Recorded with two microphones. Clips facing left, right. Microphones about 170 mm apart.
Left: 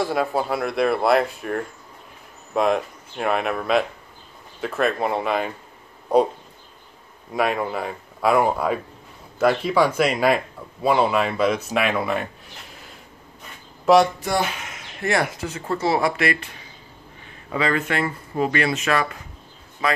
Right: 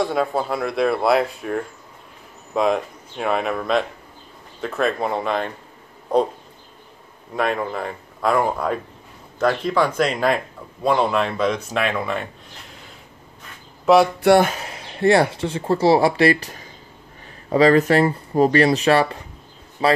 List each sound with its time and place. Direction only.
0.0 s speech: centre (ahead or behind)
7.3 s speech: 5° left (ahead or behind)
13.9 s speech: centre (ahead or behind)
14.4 s speech: 35° right (ahead or behind)